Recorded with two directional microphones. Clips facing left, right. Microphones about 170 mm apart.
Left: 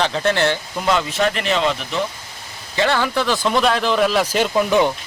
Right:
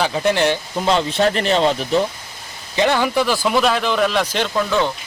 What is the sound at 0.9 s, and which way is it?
Speech, 30° right (ahead or behind).